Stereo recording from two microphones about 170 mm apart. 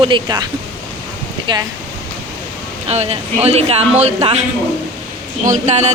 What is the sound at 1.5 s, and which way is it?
Speech, 30° right (ahead or behind).